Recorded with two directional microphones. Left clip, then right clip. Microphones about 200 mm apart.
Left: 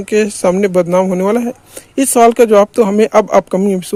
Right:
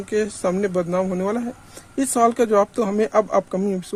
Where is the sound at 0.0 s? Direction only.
45° left (ahead or behind).